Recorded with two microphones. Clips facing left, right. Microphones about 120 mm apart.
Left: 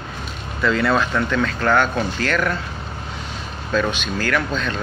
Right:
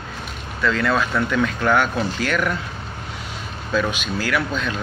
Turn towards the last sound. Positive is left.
turn(degrees=-10)  # may be behind; listen again after turning